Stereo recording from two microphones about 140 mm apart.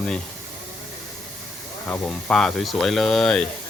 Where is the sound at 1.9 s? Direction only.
5° left (ahead or behind).